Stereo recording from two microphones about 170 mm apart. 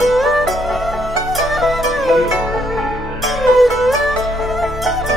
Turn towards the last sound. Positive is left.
turn(degrees=0)  # may be behind; listen again after turning